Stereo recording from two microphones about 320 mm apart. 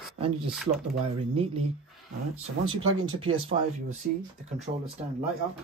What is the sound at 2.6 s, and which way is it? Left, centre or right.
Speech, right.